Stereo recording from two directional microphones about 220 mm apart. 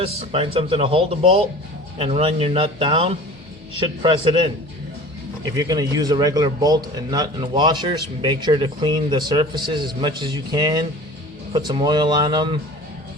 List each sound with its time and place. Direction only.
0.0 s a man's voice: 25° right (ahead or behind)
5.5 s a man's voice: 15° right (ahead or behind)